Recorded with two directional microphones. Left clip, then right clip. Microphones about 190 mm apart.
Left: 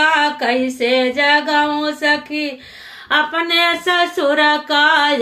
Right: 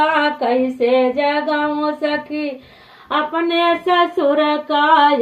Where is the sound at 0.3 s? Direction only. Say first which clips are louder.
Even; 20° left (ahead or behind).